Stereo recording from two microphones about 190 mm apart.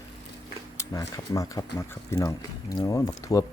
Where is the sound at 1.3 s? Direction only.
20° left (ahead or behind).